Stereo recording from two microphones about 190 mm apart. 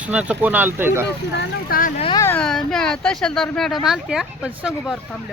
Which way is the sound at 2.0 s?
30° left (ahead or behind).